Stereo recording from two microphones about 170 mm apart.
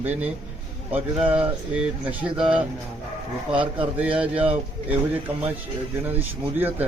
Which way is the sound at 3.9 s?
10° right (ahead or behind).